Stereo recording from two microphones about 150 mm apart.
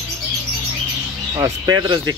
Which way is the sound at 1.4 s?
25° right (ahead or behind).